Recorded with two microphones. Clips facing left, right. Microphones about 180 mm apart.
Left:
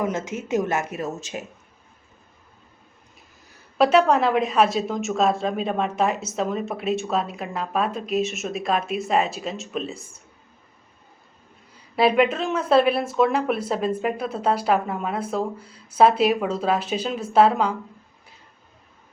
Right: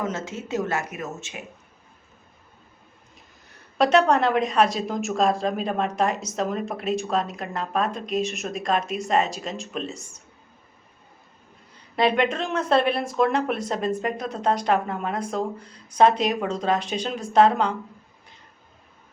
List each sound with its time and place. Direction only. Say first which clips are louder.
0.0 s speech: left 3 dB; 15° left (ahead or behind)
0.9 s speech: left 4 dB; 35° left (ahead or behind)
3.8 s speech: left 1 dB; 5° left (ahead or behind)
11.7 s a woman's voice: left 2 dB; 5° left (ahead or behind)